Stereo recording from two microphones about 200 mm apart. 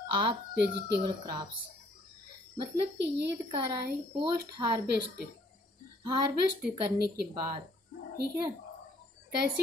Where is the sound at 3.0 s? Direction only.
60° right (ahead or behind).